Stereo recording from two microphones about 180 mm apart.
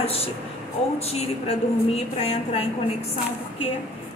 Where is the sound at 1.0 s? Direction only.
35° left (ahead or behind).